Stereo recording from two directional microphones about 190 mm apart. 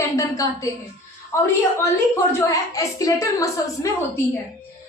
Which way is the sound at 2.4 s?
15° left (ahead or behind).